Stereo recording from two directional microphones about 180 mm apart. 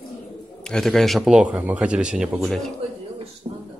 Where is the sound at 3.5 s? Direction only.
25° right (ahead or behind).